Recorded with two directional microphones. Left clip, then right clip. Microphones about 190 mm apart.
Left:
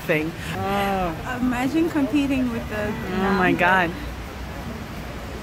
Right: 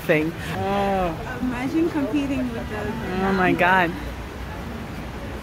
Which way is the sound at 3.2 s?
Centre (ahead or behind).